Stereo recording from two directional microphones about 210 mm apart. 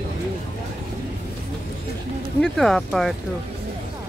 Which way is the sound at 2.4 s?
Centre (ahead or behind).